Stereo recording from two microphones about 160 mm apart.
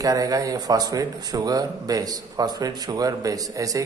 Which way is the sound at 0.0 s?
20° right (ahead or behind).